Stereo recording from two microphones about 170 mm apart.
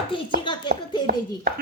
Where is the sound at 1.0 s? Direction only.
70° right (ahead or behind).